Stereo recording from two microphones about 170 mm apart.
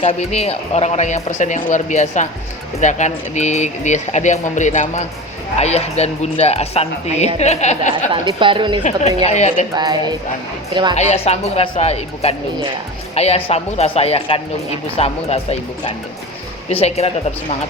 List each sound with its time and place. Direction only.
0.0 s speech: 40° left (ahead or behind)
8.4 s speech: 30° right (ahead or behind)
8.8 s speech: 40° left (ahead or behind)
9.7 s speech: 25° right (ahead or behind)
10.9 s speech: 40° left (ahead or behind)